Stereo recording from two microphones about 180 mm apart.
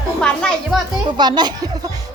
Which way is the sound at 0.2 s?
5° left (ahead or behind).